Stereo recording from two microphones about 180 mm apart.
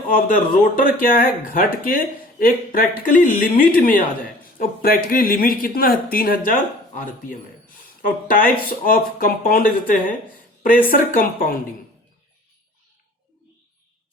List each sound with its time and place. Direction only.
0.1 s speech: 50° left (ahead or behind)